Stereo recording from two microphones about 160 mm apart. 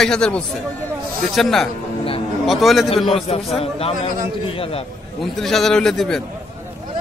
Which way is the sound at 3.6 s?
40° left (ahead or behind).